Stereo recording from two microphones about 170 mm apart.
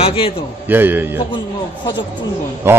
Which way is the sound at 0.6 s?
10° right (ahead or behind).